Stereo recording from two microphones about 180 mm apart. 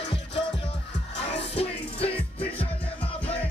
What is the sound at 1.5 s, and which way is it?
Music, 35° left (ahead or behind).